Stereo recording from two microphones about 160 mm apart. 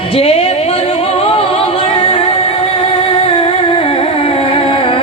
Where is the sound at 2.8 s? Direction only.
35° left (ahead or behind).